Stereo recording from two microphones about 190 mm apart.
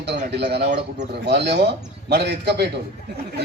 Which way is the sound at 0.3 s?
60° right (ahead or behind).